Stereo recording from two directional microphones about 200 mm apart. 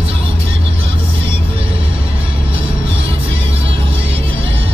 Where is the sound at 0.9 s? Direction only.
25° right (ahead or behind).